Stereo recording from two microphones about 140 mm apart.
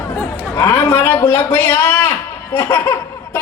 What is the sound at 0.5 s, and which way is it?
A man's voice, 20° left (ahead or behind).